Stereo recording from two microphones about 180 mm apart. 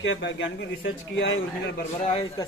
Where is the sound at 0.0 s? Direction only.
90° left.